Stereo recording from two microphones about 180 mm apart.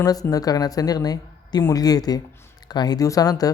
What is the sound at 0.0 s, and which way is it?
Speech, 20° left (ahead or behind).